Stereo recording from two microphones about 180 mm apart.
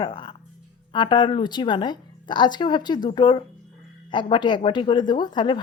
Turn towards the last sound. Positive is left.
turn(degrees=25)  # may be behind; listen again after turning